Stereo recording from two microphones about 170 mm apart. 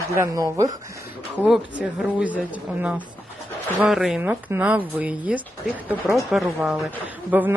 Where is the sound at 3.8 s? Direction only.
Centre (ahead or behind).